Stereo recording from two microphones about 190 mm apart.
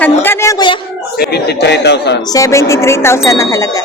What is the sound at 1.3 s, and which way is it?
Speech, 60° left (ahead or behind).